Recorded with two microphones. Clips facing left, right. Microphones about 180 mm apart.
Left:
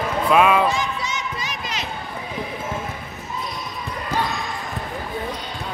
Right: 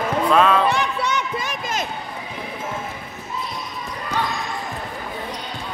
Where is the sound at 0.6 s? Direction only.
65° right (ahead or behind).